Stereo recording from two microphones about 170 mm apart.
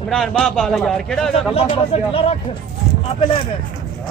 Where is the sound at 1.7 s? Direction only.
35° left (ahead or behind).